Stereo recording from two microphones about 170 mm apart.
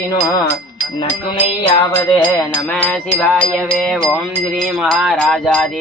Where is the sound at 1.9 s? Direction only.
15° left (ahead or behind).